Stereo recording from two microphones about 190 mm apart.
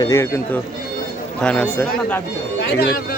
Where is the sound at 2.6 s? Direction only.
55° left (ahead or behind).